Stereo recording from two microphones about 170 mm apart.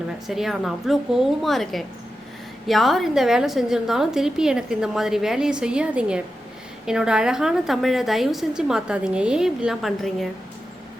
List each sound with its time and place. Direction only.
0.3 s a woman's voice: centre (ahead or behind)